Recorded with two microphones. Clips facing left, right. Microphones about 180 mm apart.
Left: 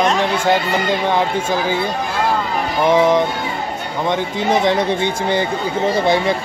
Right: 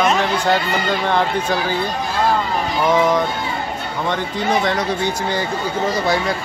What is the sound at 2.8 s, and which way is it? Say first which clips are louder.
Speech: left 3 dB; 25° left (ahead or behind).